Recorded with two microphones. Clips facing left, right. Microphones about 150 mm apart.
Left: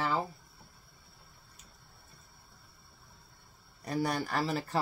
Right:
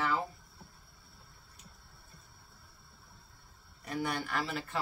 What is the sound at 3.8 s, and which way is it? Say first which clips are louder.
Speech: left 3 dB; 35° left (ahead or behind).